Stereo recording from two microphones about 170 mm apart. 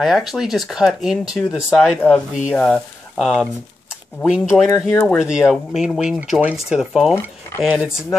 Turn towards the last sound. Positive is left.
turn(degrees=-10)  # may be behind; listen again after turning